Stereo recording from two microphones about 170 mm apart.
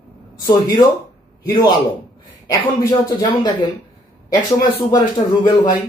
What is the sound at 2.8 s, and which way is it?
Speech, 20° left (ahead or behind).